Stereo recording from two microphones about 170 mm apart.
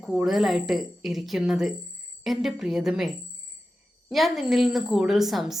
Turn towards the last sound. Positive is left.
turn(degrees=0)  # may be behind; listen again after turning